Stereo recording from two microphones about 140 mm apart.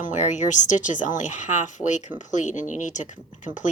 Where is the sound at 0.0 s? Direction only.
60° left (ahead or behind).